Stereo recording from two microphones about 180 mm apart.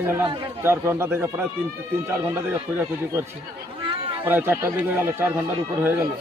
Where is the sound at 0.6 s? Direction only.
15° right (ahead or behind).